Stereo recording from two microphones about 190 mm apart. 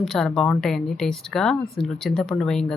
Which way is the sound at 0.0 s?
Centre (ahead or behind).